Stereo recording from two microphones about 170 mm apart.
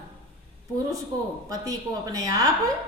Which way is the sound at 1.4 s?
20° right (ahead or behind).